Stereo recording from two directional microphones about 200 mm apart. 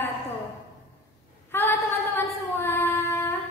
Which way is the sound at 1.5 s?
10° left (ahead or behind).